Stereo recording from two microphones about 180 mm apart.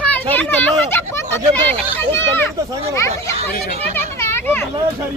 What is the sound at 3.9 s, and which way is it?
Children playing, 15° left (ahead or behind).